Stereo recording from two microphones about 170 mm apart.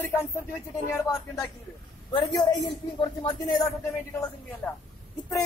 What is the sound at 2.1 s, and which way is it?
Speech, 25° left (ahead or behind).